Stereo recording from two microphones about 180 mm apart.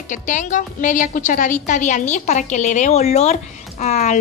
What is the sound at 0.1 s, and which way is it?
A woman's voice, 45° left (ahead or behind).